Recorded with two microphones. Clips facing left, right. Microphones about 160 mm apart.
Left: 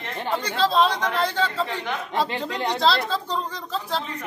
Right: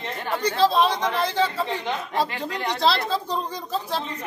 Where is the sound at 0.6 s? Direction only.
15° right (ahead or behind).